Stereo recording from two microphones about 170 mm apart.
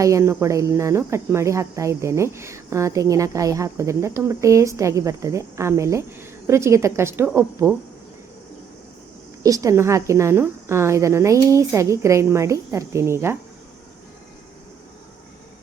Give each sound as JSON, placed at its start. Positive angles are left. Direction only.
{"t": 0.0, "sound": "speech", "side_deg": -15}
{"t": 9.4, "sound": "speech", "side_deg": -20}